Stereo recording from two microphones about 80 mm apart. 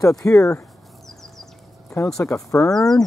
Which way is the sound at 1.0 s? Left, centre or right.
Centre.